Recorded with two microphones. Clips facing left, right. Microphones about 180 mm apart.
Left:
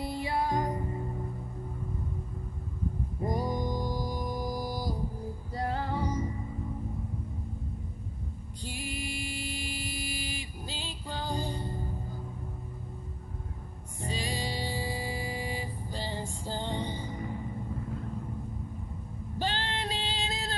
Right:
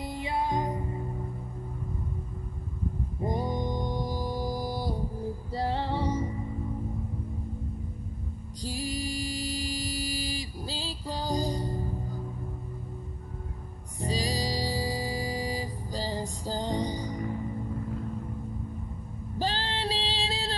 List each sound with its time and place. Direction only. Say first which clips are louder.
0.0 s music: even; 20° right (ahead or behind)
3.2 s music: right 1 dB; 25° right (ahead or behind)
5.5 s female singing: right 2 dB; 30° right (ahead or behind)
8.6 s music: right 5 dB; 35° right (ahead or behind)
14.0 s music: right 4 dB; 35° right (ahead or behind)
19.3 s female singing: right 2 dB; 35° right (ahead or behind)